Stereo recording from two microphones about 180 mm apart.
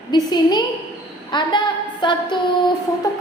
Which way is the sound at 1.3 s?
25° left (ahead or behind).